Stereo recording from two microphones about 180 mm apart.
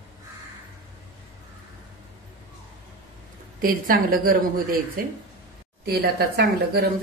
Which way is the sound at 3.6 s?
55° right (ahead or behind).